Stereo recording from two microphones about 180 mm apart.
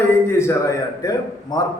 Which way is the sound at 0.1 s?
15° left (ahead or behind).